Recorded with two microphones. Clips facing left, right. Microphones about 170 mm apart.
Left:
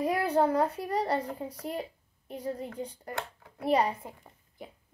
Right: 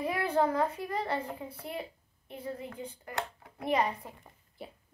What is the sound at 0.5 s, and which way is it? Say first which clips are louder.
Speech: left 3 dB; 35° left (ahead or behind).